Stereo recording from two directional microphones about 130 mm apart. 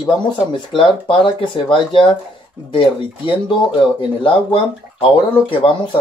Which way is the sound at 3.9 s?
40° left (ahead or behind).